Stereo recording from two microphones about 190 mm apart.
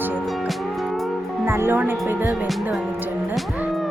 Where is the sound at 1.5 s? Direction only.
10° right (ahead or behind).